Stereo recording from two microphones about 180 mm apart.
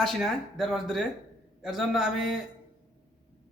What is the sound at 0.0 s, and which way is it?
A man's voice, centre (ahead or behind).